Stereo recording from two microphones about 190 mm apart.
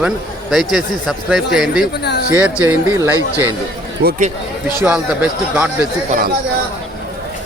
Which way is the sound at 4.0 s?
55° right (ahead or behind).